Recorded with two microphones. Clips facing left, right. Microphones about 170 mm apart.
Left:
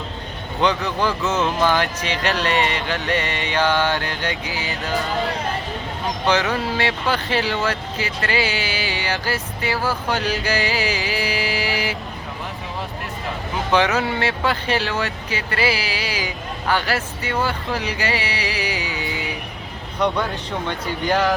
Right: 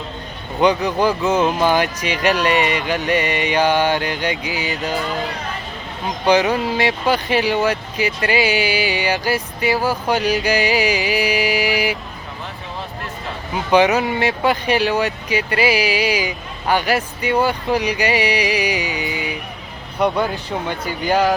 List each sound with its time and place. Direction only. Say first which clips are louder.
0.6 s speech: right 4 dB; 15° right (ahead or behind)
6.2 s speech: right 5 dB; 15° right (ahead or behind)
13.7 s speech: right 5 dB; 15° right (ahead or behind)